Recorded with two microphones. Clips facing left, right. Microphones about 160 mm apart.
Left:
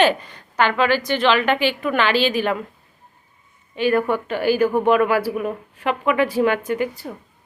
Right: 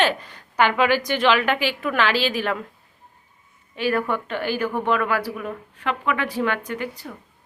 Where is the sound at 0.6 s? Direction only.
15° right (ahead or behind).